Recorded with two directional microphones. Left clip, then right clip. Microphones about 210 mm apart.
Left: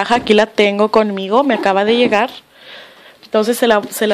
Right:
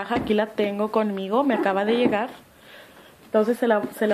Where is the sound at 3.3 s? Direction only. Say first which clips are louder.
Left 7 dB; 45° left (ahead or behind).